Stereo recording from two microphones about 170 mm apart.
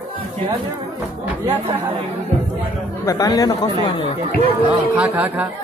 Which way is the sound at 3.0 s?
20° left (ahead or behind).